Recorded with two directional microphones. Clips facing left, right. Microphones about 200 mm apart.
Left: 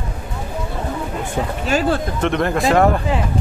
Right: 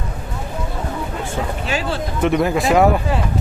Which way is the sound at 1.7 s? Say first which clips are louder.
Left 7 dB; 45° left (ahead or behind).